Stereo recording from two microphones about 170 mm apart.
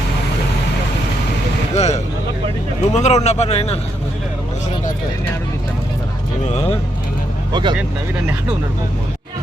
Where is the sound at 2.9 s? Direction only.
40° left (ahead or behind).